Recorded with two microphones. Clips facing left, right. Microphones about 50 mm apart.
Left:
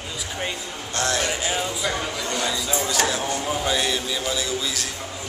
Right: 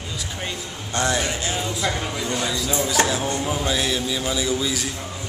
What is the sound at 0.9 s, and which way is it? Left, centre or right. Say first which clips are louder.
Speech: right 2 dB; centre.